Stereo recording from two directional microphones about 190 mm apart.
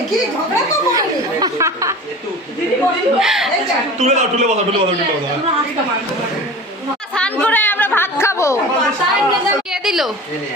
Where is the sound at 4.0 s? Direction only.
35° right (ahead or behind).